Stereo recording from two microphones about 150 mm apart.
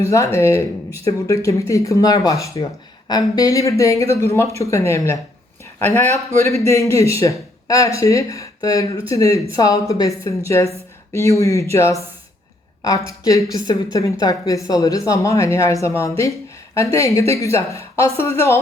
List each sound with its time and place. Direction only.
0.0 s speech: 20° left (ahead or behind)